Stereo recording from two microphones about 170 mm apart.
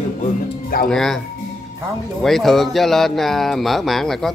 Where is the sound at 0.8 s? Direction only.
Centre (ahead or behind).